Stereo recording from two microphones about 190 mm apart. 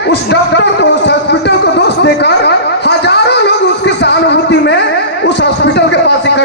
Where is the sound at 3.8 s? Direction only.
65° left (ahead or behind).